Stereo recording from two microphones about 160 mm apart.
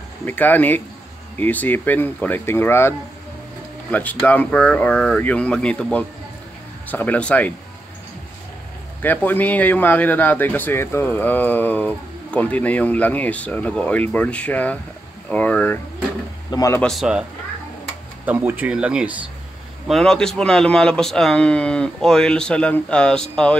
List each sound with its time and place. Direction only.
0.2 s speech: 10° left (ahead or behind)
3.9 s speech: 10° left (ahead or behind)
9.0 s speech: 10° left (ahead or behind)
16.4 s speech: 20° left (ahead or behind)
16.8 s speech: centre (ahead or behind)
18.2 s speech: 10° right (ahead or behind); by 23.5 s 5° left (ahead or behind)